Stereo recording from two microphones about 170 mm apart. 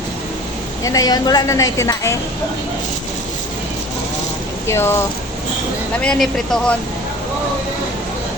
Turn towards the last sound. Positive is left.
turn(degrees=5)  # may be behind; listen again after turning